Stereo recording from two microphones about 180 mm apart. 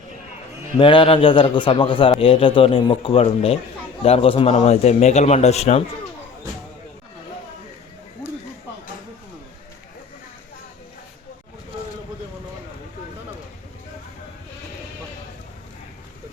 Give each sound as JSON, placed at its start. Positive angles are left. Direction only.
{"t": 0.8, "sound": "a man's voice", "side_deg": 30}